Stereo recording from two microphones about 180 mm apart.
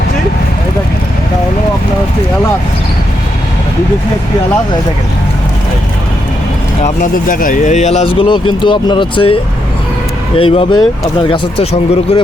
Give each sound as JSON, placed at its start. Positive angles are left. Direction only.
{"t": 6.8, "sound": "speech", "side_deg": 50}